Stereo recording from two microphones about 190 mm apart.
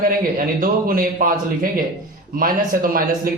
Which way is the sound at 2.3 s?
50° right (ahead or behind).